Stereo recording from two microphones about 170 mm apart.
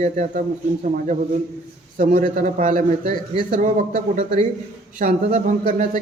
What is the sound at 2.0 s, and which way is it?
A man's voice, 45° right (ahead or behind).